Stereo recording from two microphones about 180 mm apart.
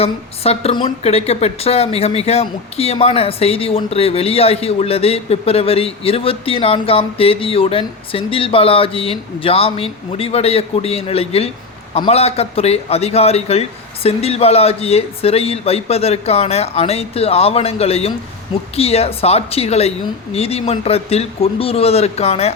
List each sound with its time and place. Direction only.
0.0 s a woman's voice: 35° left (ahead or behind)